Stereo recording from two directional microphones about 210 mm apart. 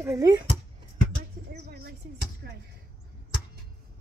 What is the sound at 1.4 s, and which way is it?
Music, 50° right (ahead or behind).